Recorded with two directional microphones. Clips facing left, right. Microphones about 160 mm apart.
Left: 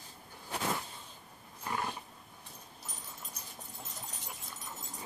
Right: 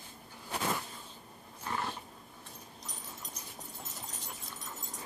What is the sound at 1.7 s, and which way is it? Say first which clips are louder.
Roaring cats: even; 10° left (ahead or behind).